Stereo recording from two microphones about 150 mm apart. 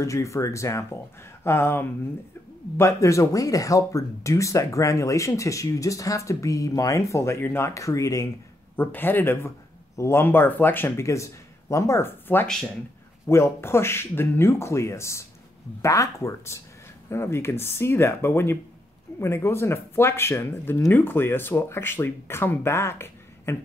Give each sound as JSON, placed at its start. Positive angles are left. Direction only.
{"t": 0.0, "sound": "speech", "side_deg": 20}